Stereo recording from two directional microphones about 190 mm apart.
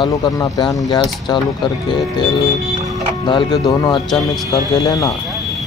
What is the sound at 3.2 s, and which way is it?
Speech, 25° left (ahead or behind).